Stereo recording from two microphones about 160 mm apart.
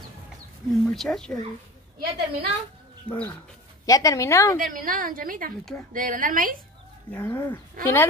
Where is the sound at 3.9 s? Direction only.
20° left (ahead or behind).